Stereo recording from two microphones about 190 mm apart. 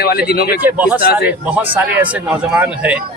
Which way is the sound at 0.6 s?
5° right (ahead or behind).